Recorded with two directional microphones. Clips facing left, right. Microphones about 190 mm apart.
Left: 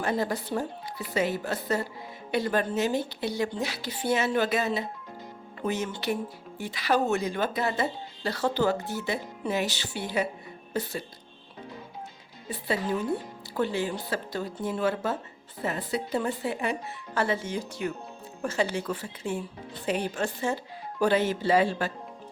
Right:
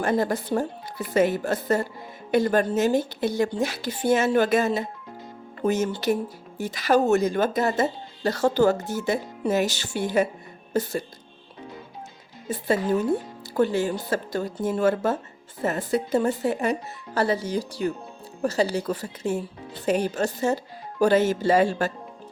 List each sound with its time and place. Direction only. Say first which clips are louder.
0.0 s speech: right 5 dB; 50° right (ahead or behind)
12.5 s speech: right 6 dB; 45° right (ahead or behind)